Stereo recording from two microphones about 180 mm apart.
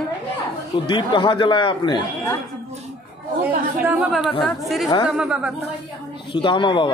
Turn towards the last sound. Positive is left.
turn(degrees=25)  # may be behind; listen again after turning